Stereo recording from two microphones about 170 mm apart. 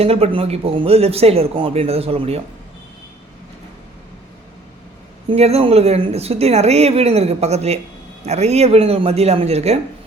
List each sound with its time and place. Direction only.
0.0 s speech: 35° right (ahead or behind)
5.3 s speech: 35° right (ahead or behind)